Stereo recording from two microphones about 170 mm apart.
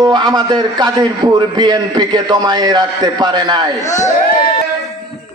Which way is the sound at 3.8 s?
45° left (ahead or behind).